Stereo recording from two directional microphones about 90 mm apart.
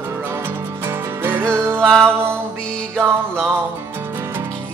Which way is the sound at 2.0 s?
25° right (ahead or behind).